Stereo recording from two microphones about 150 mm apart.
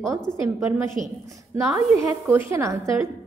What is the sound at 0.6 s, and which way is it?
A woman's voice, 20° right (ahead or behind).